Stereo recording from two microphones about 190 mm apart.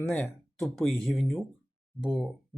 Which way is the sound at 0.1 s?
5° left (ahead or behind).